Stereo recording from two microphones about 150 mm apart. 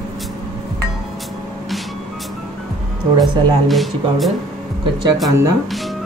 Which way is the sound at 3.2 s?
Centre (ahead or behind).